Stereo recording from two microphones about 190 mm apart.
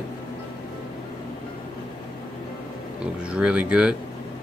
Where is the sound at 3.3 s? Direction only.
5° right (ahead or behind).